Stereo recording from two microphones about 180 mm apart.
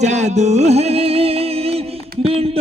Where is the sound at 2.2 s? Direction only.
35° right (ahead or behind).